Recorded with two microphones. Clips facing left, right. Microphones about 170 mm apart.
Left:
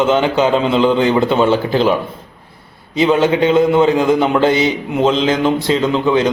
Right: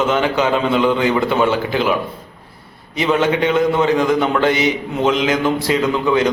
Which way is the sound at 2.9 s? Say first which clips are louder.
Left 4 dB; 25° left (ahead or behind).